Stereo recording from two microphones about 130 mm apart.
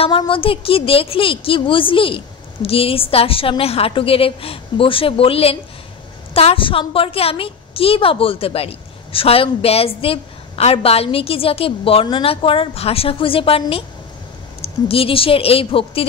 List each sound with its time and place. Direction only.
0.3 s a woman's voice: 45° left (ahead or behind)